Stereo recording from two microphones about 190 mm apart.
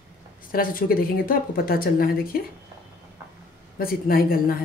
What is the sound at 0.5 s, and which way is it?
A woman's voice, 50° left (ahead or behind).